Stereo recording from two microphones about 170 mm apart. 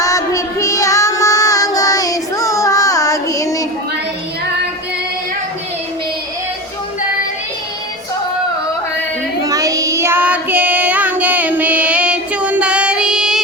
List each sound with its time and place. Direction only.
0.0 s child singing: 20° left (ahead or behind)
9.5 s child singing: 20° right (ahead or behind); by 13.4 s 5° right (ahead or behind)